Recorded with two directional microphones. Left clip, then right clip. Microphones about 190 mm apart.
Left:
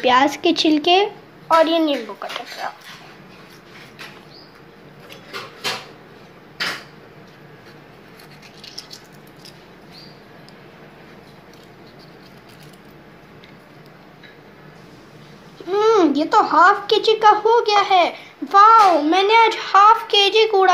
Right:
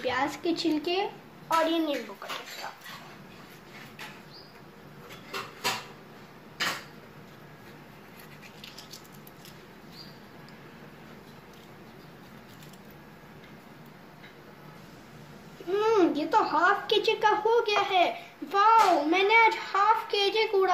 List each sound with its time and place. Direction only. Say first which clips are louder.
0.0 s a child's voice: left 14 dB; 35° left (ahead or behind)
15.7 s a child's voice: left 9 dB; 35° left (ahead or behind)